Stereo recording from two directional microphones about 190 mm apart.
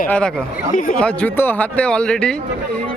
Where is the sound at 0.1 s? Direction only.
5° left (ahead or behind).